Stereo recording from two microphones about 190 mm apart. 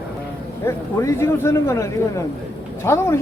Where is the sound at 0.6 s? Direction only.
15° left (ahead or behind).